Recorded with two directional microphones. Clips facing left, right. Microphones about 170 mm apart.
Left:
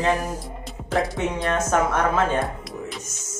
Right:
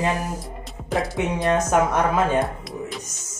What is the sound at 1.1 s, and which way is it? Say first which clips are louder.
Speech: right 3 dB; 15° right (ahead or behind).